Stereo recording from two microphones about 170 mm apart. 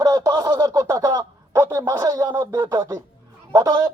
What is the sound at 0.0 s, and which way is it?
Speech, 20° right (ahead or behind).